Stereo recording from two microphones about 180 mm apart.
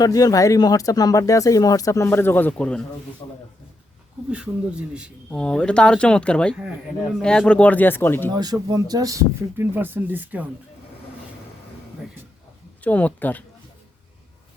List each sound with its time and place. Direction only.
0.0 s speech: 20° left (ahead or behind)
3.2 s speech: 30° left (ahead or behind)
4.3 s speech: 5° right (ahead or behind)
5.3 s speech: 5° left (ahead or behind)
8.4 s speech: 20° right (ahead or behind)
12.8 s speech: 10° left (ahead or behind)